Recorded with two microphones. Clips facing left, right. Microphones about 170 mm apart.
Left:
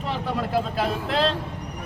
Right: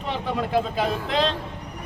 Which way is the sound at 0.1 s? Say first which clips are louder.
Right 2 dB; centre (ahead or behind).